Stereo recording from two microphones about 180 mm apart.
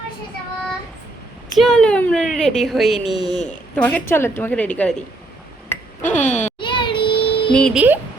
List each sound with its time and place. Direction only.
1.5 s speech: centre (ahead or behind)
3.2 s a woman's voice: 35° left (ahead or behind)
3.8 s a woman's voice: 10° left (ahead or behind)
6.0 s a sound: 45° left (ahead or behind)
6.6 s child singing: 25° left (ahead or behind)
7.5 s speech: 5° left (ahead or behind)